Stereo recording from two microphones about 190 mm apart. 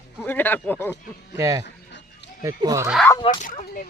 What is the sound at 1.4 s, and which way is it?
Speech, 15° right (ahead or behind).